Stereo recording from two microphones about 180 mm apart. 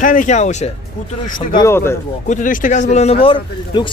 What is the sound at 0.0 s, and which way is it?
Speech, 50° left (ahead or behind).